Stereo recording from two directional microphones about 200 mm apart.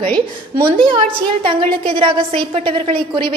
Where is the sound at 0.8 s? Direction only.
25° right (ahead or behind).